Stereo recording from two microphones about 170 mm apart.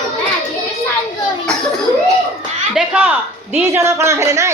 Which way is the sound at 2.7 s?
5° right (ahead or behind).